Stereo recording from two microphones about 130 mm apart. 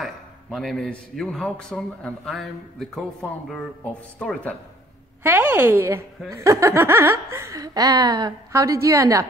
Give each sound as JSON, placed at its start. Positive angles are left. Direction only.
{"t": 0.0, "sound": "a man's voice", "side_deg": 5}
{"t": 5.2, "sound": "a woman's voice", "side_deg": -15}